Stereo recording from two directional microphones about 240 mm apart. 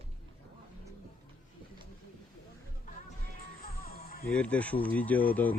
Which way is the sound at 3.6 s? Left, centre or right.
Left.